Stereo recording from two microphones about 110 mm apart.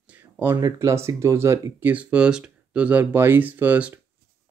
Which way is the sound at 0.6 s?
25° right (ahead or behind).